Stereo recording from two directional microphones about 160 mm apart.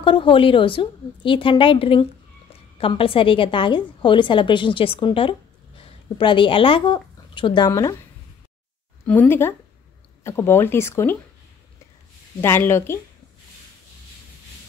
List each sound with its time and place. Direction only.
0.0 s a woman's voice: 30° left (ahead or behind)
9.0 s speech: 10° left (ahead or behind)
12.4 s speech: 15° left (ahead or behind)